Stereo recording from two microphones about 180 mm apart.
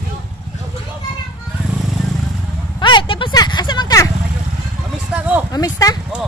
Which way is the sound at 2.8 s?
25° left (ahead or behind).